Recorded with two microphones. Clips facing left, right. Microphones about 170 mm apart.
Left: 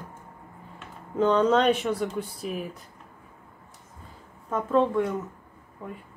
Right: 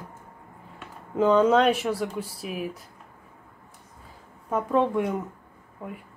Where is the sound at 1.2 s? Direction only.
5° right (ahead or behind).